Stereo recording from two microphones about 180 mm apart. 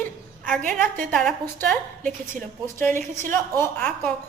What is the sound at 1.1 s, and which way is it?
A woman's voice, 5° left (ahead or behind).